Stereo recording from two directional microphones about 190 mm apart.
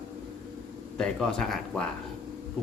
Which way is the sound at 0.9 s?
5° left (ahead or behind).